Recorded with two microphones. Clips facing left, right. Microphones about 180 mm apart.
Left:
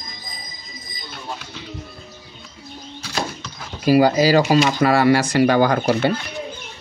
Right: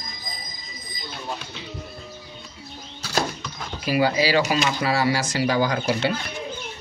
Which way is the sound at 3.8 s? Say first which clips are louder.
Left 7 dB; 45° left (ahead or behind).